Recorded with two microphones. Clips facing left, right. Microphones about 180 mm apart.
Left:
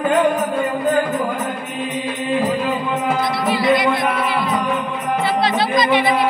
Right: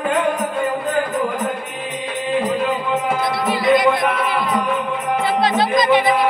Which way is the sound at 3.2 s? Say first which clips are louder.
Left 1 dB; 50° right (ahead or behind).